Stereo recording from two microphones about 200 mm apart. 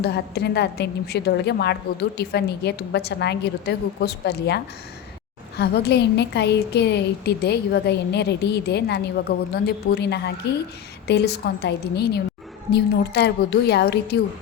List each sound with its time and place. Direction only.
0.0 s a woman's voice: 55° left (ahead or behind)